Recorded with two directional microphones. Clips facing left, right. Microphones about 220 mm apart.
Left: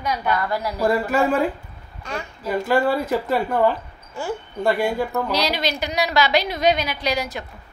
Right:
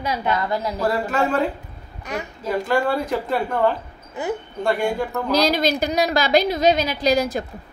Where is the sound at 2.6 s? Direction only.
5° left (ahead or behind).